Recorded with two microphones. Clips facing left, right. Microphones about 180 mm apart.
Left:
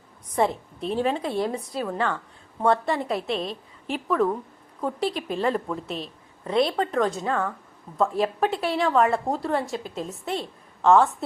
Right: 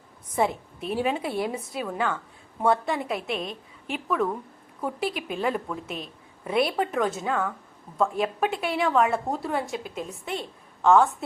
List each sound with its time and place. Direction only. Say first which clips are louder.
0.3 s a woman's voice: left 2 dB; 5° right (ahead or behind)
3.3 s a woman's voice: left 3 dB; 30° left (ahead or behind)
3.8 s a woman's voice: left 3 dB; centre (ahead or behind)